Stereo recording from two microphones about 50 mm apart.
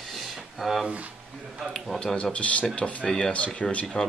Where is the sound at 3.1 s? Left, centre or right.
Centre.